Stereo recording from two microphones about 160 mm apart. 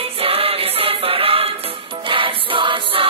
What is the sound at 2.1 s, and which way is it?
Choir, 35° right (ahead or behind).